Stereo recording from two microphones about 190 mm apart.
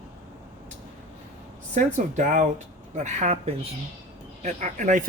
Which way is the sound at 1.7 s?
40° right (ahead or behind).